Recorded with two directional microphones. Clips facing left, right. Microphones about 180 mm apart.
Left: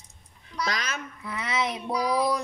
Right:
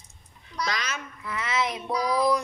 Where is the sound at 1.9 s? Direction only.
5° left (ahead or behind).